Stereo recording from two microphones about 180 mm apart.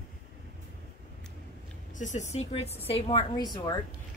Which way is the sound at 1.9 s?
45° left (ahead or behind).